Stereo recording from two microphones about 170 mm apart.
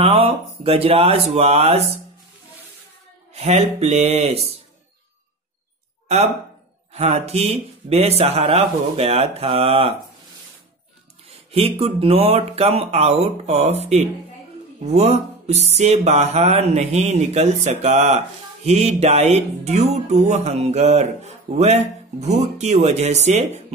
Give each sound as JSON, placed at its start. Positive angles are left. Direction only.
{"t": 0.0, "sound": "speech", "side_deg": -35}
{"t": 3.3, "sound": "speech", "side_deg": -40}
{"t": 6.9, "sound": "speech", "side_deg": -40}
{"t": 11.5, "sound": "speech", "side_deg": -35}